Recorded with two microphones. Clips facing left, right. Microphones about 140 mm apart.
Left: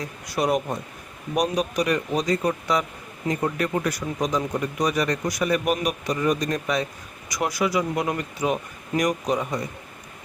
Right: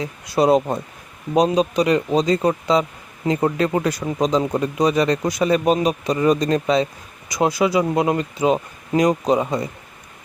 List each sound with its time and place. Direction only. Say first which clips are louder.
0.3 s speech: right 7 dB; 30° right (ahead or behind)